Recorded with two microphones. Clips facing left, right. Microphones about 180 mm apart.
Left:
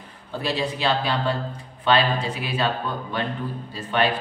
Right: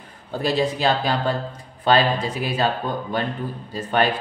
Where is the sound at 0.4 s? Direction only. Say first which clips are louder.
Right 4 dB; 45° right (ahead or behind).